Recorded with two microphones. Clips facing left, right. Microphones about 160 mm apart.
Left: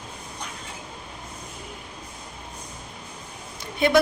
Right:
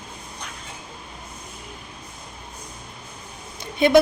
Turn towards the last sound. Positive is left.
turn(degrees=-20)  # may be behind; listen again after turning